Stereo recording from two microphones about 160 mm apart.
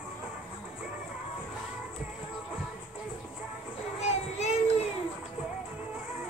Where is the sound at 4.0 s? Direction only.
45° left (ahead or behind).